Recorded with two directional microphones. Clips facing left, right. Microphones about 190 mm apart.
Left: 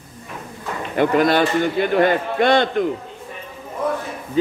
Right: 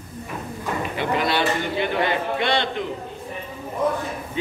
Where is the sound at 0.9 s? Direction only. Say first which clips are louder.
Left 8 dB; 45° left (ahead or behind).